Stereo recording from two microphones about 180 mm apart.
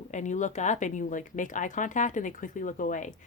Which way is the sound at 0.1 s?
40° left (ahead or behind).